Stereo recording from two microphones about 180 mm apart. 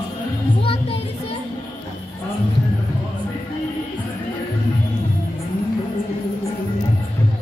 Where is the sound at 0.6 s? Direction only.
30° left (ahead or behind).